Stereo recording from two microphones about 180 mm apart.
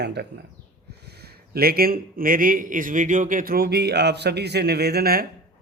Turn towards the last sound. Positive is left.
turn(degrees=-60)  # may be behind; listen again after turning